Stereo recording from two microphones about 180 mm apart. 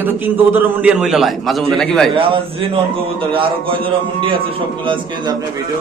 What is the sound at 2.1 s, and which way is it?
A man's voice, 30° right (ahead or behind).